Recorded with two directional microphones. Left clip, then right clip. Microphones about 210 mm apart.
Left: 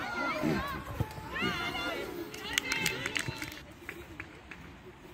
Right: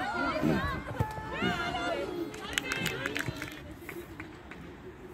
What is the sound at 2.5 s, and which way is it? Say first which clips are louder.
Run: left 2 dB; 50° right (ahead or behind).